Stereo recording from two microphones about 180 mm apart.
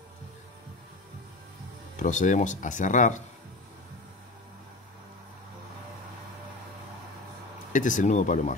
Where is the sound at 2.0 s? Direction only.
45° left (ahead or behind).